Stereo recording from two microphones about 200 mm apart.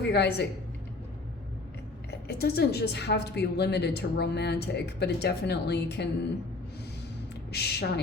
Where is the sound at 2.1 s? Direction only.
55° left (ahead or behind).